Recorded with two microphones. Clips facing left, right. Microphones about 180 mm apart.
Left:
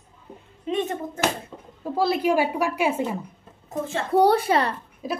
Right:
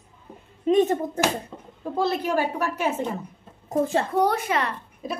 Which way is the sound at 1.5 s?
Centre (ahead or behind).